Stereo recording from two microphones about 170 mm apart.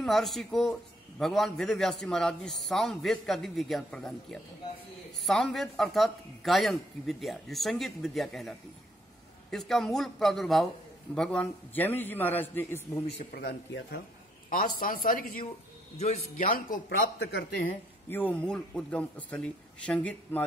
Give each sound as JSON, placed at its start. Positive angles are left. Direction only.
{"t": 0.0, "sound": "a man's voice", "side_deg": 0}
{"t": 13.2, "sound": "speech", "side_deg": 65}
{"t": 14.5, "sound": "a man's voice", "side_deg": 55}
{"t": 16.0, "sound": "a man's voice", "side_deg": 40}
{"t": 16.5, "sound": "speech", "side_deg": 55}
{"t": 17.0, "sound": "speech", "side_deg": 90}
{"t": 18.1, "sound": "a man's voice", "side_deg": 10}